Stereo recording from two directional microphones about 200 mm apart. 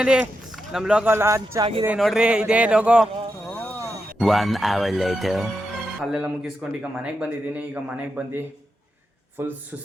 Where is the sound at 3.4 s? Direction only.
10° left (ahead or behind).